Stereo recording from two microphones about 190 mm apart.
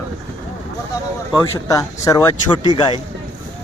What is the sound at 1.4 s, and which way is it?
Speech, 15° left (ahead or behind).